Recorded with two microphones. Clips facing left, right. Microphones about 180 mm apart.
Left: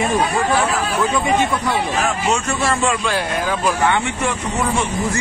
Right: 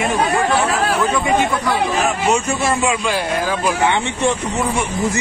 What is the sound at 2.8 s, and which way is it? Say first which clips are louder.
Speech: right 1 dB; 5° right (ahead or behind).